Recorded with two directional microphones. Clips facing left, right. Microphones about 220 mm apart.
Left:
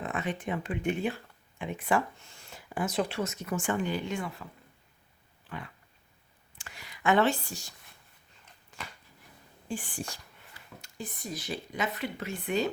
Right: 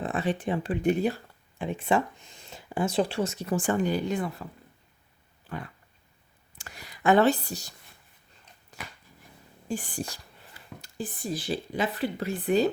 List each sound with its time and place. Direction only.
0.0 s speech: 30° right (ahead or behind)
5.5 s a sound: 40° right (ahead or behind)
9.6 s speech: 40° right (ahead or behind)